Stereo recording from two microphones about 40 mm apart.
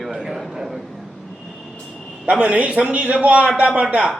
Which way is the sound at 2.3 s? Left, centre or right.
Right.